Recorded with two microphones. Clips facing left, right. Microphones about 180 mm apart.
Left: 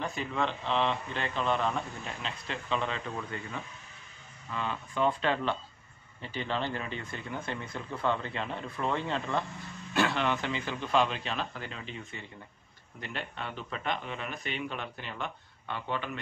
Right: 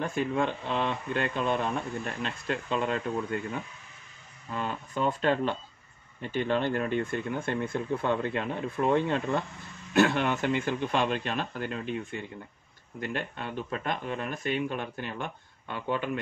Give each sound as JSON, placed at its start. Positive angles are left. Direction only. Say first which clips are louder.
{"t": 0.0, "sound": "a man's voice", "louder": "right 4 dB", "side_deg": -50}